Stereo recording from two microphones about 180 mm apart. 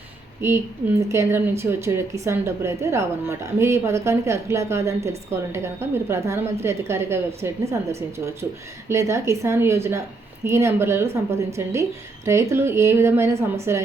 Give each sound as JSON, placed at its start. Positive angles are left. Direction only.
{"t": 0.4, "sound": "a woman's voice", "side_deg": -15}